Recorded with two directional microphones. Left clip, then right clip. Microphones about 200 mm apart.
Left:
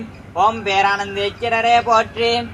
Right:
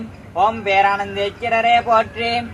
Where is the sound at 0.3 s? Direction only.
15° right (ahead or behind).